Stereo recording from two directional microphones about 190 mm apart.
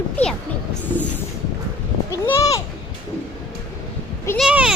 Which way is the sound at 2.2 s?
15° left (ahead or behind).